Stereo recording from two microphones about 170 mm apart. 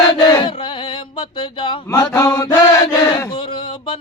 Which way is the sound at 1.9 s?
15° left (ahead or behind).